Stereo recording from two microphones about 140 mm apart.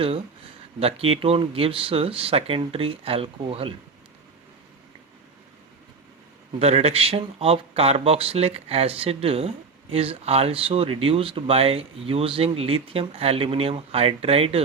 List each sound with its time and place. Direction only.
0.8 s speech: 45° right (ahead or behind)
6.6 s speech: 45° right (ahead or behind)